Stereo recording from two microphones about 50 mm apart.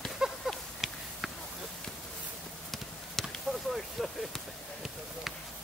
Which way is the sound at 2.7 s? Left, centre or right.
Centre.